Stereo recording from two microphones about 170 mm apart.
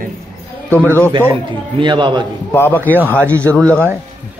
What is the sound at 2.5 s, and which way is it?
Speech, 10° left (ahead or behind).